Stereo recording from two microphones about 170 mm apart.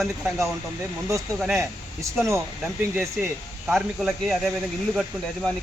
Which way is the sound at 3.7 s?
Centre (ahead or behind).